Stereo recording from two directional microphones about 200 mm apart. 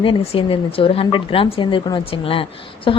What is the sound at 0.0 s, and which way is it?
Speech, 25° left (ahead or behind).